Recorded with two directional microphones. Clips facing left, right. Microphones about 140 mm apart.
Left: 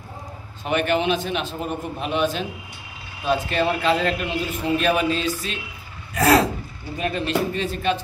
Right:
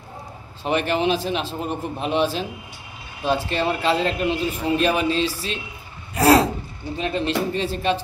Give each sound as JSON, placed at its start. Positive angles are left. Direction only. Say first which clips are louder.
{"t": 0.7, "sound": "a man's voice", "louder": "even", "side_deg": -30}